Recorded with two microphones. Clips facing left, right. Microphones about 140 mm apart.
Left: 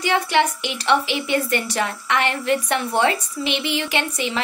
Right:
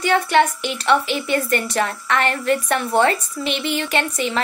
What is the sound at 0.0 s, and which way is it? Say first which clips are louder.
A woman's voice: right 3 dB; 15° left (ahead or behind).